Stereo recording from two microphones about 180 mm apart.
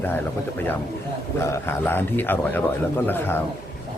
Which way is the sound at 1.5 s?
10° left (ahead or behind).